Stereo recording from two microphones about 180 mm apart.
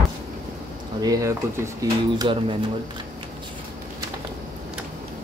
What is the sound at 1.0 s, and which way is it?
Speech, 20° right (ahead or behind).